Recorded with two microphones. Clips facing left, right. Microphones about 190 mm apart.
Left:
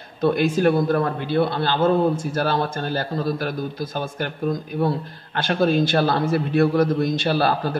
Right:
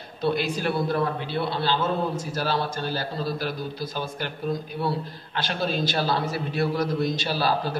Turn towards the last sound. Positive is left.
turn(degrees=55)  # may be behind; listen again after turning